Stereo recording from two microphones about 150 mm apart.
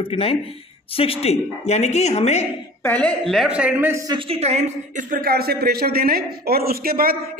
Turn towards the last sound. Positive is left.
turn(degrees=-80)